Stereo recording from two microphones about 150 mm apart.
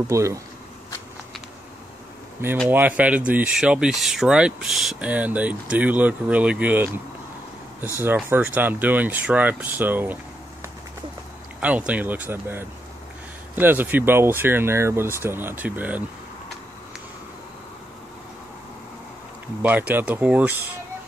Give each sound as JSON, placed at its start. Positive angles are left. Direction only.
{"t": 0.1, "sound": "speech", "side_deg": -20}
{"t": 2.7, "sound": "speech", "side_deg": -10}
{"t": 8.0, "sound": "speech", "side_deg": -15}
{"t": 11.6, "sound": "speech", "side_deg": -10}
{"t": 19.6, "sound": "speech", "side_deg": -10}